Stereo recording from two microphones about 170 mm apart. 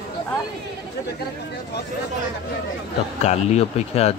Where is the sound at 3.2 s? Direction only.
40° left (ahead or behind).